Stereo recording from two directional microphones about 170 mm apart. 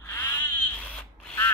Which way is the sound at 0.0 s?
15° left (ahead or behind).